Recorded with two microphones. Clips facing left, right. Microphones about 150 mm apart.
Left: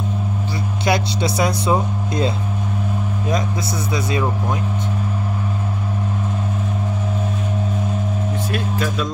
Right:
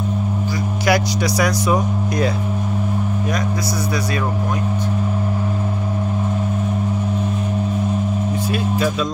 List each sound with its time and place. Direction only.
0.8 s speech: 25° left (ahead or behind)